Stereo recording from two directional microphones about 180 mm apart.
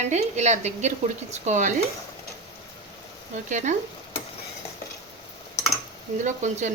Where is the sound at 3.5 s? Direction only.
40° right (ahead or behind).